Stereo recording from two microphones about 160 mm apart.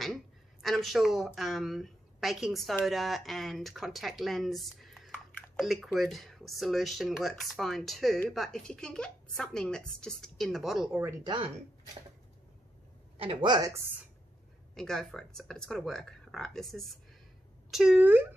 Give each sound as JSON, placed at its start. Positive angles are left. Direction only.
{"t": 0.0, "sound": "speech", "side_deg": 0}
{"t": 11.2, "sound": "speech", "side_deg": -30}
{"t": 13.2, "sound": "speech", "side_deg": -30}
{"t": 14.8, "sound": "speech", "side_deg": 5}